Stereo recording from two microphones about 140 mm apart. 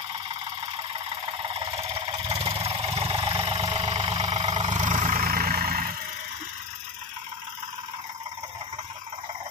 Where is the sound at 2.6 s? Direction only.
45° right (ahead or behind); by 5.9 s 90° right.